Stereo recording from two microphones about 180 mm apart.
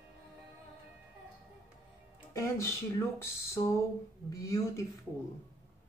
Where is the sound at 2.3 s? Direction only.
15° left (ahead or behind).